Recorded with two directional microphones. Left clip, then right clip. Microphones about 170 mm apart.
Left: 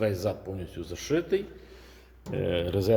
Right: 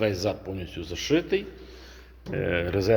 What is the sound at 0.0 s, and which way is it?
Speech, centre (ahead or behind).